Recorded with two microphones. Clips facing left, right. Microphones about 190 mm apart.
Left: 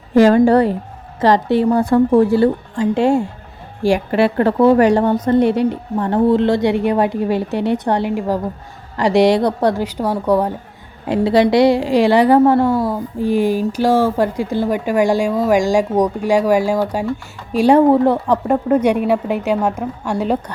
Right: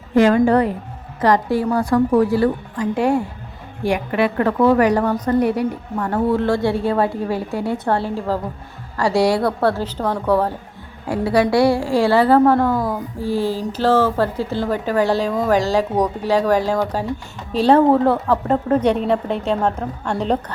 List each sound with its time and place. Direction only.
0.2 s a woman's voice: 30° left (ahead or behind); by 20.4 s 10° left (ahead or behind)